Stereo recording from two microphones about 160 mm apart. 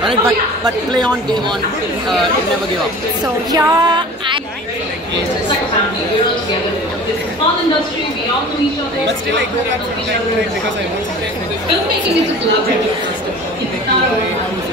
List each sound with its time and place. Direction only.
3.5 s female singing: 30° right (ahead or behind)